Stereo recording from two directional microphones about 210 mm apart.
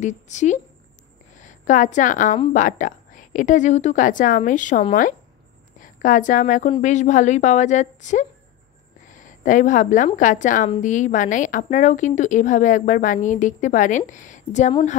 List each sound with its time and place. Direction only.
0.0 s a woman's voice: 35° left (ahead or behind)